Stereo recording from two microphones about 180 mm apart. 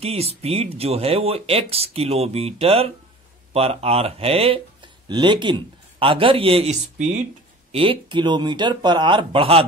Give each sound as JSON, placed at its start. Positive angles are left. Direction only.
{"t": 0.0, "sound": "speech", "side_deg": -35}
{"t": 7.7, "sound": "speech", "side_deg": -30}